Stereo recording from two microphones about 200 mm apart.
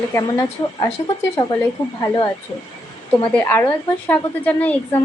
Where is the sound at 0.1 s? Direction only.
15° left (ahead or behind).